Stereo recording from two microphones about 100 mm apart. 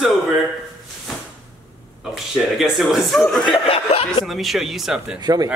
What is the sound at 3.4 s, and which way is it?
Speech, 65° left (ahead or behind).